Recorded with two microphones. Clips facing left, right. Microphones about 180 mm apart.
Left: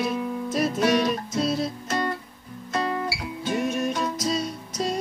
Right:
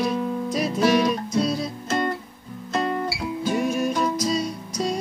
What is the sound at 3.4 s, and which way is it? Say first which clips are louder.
Music: right 2 dB; centre (ahead or behind).